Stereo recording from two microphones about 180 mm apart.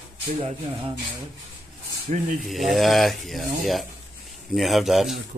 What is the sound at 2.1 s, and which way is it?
Speech, 40° right (ahead or behind).